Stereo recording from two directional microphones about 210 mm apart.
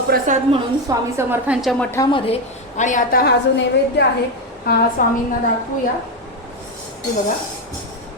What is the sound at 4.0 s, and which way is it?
Speech, 55° left (ahead or behind).